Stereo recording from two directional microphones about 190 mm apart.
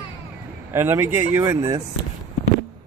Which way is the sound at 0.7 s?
15° right (ahead or behind).